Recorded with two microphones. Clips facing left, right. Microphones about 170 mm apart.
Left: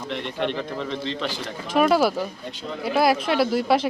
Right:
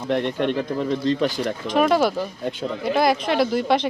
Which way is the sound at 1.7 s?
5° left (ahead or behind).